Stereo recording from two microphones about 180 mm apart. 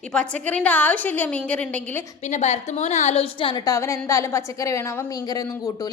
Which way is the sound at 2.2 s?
40° left (ahead or behind).